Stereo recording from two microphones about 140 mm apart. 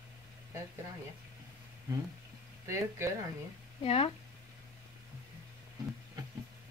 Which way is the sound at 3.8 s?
45° left (ahead or behind).